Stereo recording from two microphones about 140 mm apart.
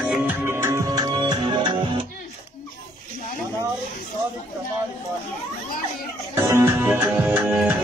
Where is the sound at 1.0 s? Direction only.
30° right (ahead or behind).